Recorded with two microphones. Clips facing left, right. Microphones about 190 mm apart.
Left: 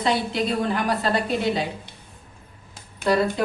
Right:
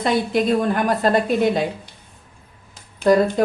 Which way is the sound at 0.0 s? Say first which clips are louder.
Right 4 dB; 50° right (ahead or behind).